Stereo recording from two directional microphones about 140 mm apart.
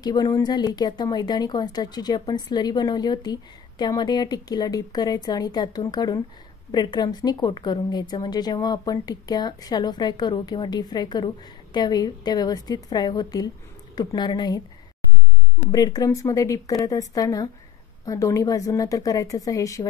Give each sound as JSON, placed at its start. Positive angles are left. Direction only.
{"t": 0.0, "sound": "speech", "side_deg": 30}
{"t": 15.7, "sound": "speech", "side_deg": 25}